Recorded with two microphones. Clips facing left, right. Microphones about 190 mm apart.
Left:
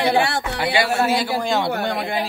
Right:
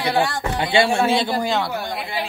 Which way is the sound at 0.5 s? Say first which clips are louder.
Right 4 dB; 25° right (ahead or behind).